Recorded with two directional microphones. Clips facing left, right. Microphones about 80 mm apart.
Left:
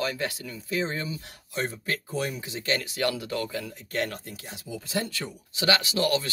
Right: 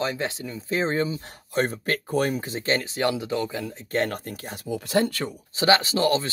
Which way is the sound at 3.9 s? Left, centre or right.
Right.